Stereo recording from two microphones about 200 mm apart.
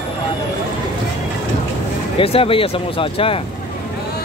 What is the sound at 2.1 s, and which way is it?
Speech, 30° left (ahead or behind).